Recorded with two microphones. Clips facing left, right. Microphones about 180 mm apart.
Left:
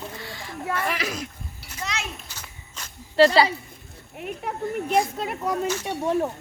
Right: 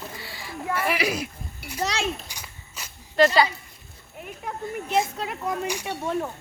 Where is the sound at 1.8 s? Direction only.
35° right (ahead or behind).